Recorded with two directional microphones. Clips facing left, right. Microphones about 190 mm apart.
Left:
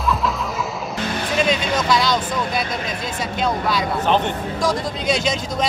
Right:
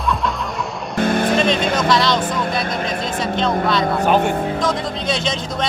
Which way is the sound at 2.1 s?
55° right (ahead or behind).